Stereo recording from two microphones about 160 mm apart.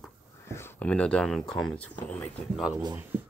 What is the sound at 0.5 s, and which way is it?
Speech, 10° left (ahead or behind).